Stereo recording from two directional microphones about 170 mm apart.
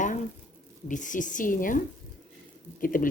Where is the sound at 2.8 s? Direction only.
55° left (ahead or behind).